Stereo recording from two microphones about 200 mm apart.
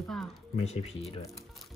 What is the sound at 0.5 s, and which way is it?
Speech, 30° left (ahead or behind).